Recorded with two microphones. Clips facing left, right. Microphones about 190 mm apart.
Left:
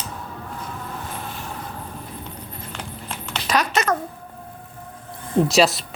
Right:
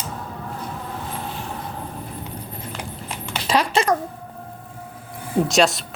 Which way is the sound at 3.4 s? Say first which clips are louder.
Right 2 dB; 30° right (ahead or behind).